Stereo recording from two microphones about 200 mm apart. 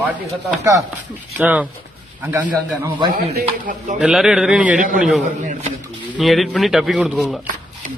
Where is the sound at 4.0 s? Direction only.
5° right (ahead or behind).